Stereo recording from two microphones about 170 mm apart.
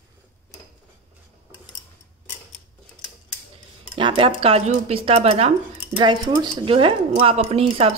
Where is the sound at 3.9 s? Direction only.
30° right (ahead or behind).